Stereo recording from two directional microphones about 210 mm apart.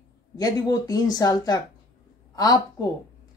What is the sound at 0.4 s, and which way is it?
Speech, 20° left (ahead or behind).